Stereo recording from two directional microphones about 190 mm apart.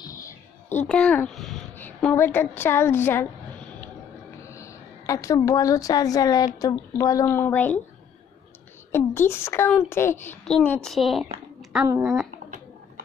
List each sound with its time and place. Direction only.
0.0 s a sound: 15° left (ahead or behind)
0.8 s a woman's voice: 5° left (ahead or behind)
8.9 s a child's voice: 10° left (ahead or behind); by 12.3 s 5° right (ahead or behind)